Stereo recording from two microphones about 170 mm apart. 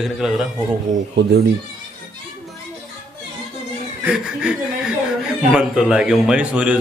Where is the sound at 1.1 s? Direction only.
85° right.